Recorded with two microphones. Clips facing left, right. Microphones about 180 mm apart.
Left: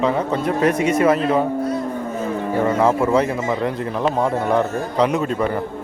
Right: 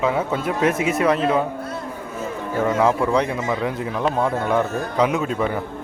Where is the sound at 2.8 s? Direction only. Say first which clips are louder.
Left 2 dB; centre (ahead or behind).